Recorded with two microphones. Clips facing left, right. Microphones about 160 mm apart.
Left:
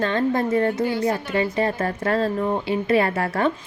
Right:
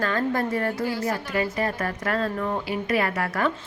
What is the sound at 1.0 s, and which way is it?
Speech, 25° left (ahead or behind).